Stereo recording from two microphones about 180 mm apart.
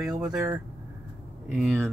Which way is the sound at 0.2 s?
5° right (ahead or behind).